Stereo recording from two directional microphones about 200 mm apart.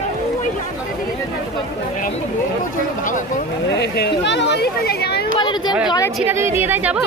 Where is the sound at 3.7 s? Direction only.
55° left (ahead or behind).